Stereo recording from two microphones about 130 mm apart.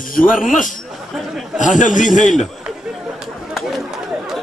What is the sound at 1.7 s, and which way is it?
Speech, 75° left (ahead or behind).